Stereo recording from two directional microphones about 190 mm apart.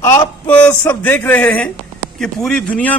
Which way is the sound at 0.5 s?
10° left (ahead or behind).